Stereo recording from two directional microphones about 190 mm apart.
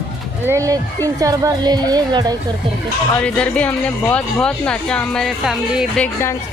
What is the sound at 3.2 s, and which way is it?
Speech, 5° left (ahead or behind).